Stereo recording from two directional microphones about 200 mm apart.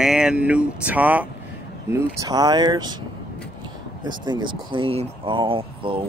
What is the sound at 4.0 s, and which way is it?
Speech, 20° right (ahead or behind).